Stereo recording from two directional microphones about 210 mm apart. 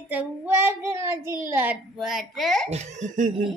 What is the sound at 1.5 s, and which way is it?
A child's voice, 10° right (ahead or behind).